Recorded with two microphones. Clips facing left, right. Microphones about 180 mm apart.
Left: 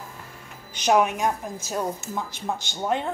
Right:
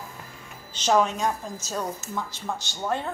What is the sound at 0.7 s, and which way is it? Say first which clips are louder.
A woman's voice: left 2 dB; 15° left (ahead or behind).